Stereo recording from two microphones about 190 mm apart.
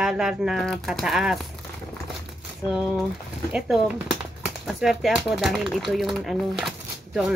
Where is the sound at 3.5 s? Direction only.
Centre (ahead or behind).